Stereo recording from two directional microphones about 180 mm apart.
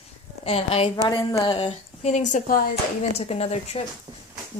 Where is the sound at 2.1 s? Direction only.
45° left (ahead or behind).